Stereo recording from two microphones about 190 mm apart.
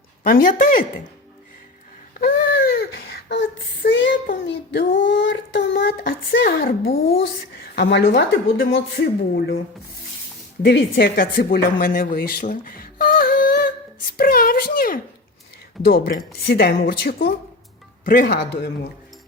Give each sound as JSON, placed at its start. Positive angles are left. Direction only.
{"t": 0.2, "sound": "speech", "side_deg": 50}
{"t": 2.1, "sound": "baby cry", "side_deg": 50}
{"t": 3.8, "sound": "child singing", "side_deg": 70}
{"t": 4.4, "sound": "child singing", "side_deg": 60}
{"t": 6.4, "sound": "a woman's voice", "side_deg": 50}
{"t": 10.6, "sound": "a woman's voice", "side_deg": 65}